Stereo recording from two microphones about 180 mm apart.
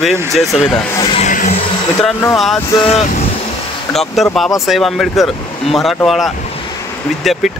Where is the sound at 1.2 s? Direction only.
45° left (ahead or behind).